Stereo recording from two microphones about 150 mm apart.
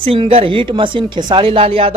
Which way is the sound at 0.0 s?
35° right (ahead or behind).